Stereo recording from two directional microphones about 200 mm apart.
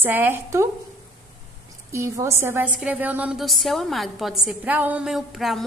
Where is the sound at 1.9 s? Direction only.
15° right (ahead or behind).